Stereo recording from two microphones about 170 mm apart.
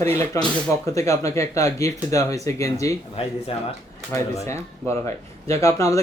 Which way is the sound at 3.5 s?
35° left (ahead or behind).